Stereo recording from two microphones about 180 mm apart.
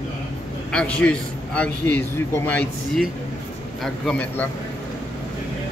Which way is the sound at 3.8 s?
5° left (ahead or behind).